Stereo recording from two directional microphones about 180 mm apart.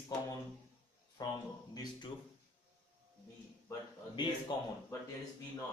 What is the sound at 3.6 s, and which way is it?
Speech, 25° left (ahead or behind).